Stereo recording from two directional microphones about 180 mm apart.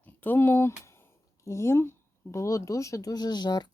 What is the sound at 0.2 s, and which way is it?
Speech, 10° left (ahead or behind).